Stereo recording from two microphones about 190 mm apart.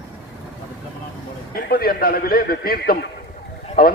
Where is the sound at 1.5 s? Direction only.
50° left (ahead or behind).